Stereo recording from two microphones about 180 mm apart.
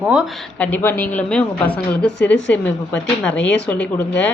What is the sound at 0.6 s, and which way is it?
A woman's voice, 10° left (ahead or behind).